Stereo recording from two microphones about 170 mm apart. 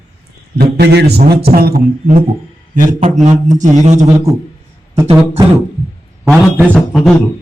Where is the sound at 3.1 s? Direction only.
45° right (ahead or behind).